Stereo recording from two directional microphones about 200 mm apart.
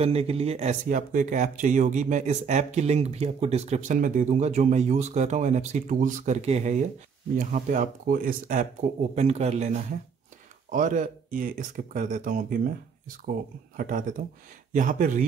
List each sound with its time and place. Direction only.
0.0 s speech: 30° right (ahead or behind)
13.7 s speech: 45° right (ahead or behind)